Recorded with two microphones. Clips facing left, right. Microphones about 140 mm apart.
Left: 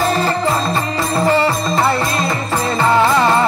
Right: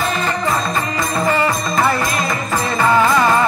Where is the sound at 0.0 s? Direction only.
35° left (ahead or behind).